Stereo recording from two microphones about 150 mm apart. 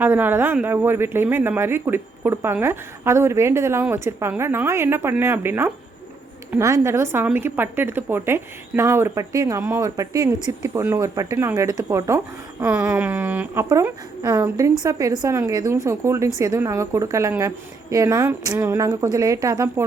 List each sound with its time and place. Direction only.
0.0 s speech: 15° right (ahead or behind)